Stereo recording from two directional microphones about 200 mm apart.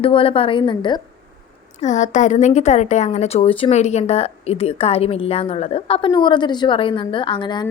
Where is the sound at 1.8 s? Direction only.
35° left (ahead or behind).